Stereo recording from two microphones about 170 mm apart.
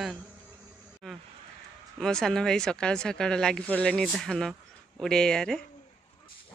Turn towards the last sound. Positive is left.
turn(degrees=5)  # may be behind; listen again after turning